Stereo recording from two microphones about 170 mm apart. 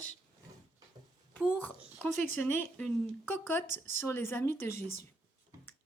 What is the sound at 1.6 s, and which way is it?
Speech, 10° left (ahead or behind).